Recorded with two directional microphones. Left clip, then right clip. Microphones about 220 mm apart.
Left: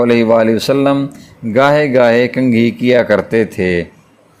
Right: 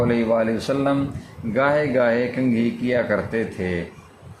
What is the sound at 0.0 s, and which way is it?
A man's voice, 40° left (ahead or behind).